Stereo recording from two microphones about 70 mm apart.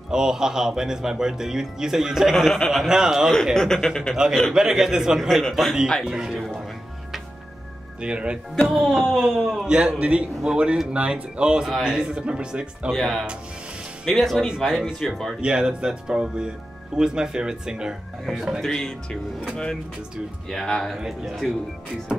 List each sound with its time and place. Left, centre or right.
0.1 s speech: centre
3.5 s a man's voice: centre
4.6 s speech: centre
8.0 s speech: centre
8.7 s speech: centre
9.7 s speech: centre
12.9 s speech: centre
15.4 s speech: centre
18.7 s a man's voice: centre
21.0 s speech: centre